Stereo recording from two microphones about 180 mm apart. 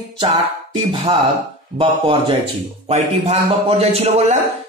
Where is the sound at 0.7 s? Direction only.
25° right (ahead or behind).